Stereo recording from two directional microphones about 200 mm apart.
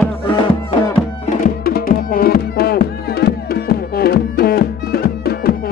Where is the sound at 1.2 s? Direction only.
45° left (ahead or behind).